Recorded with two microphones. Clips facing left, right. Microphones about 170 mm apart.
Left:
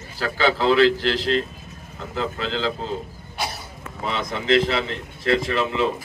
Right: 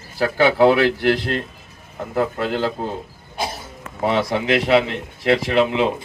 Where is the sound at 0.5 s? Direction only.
60° right (ahead or behind).